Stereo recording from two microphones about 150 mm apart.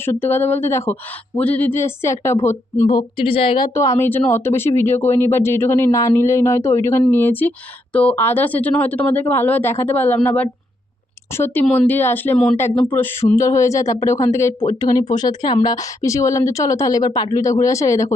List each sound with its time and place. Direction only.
0.0 s speech: 15° left (ahead or behind)
2.8 s a woman's voice: 30° left (ahead or behind)
3.8 s speech: 20° left (ahead or behind)